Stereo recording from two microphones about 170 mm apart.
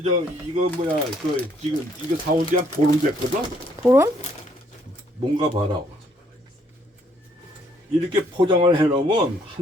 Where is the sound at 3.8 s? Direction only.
15° right (ahead or behind).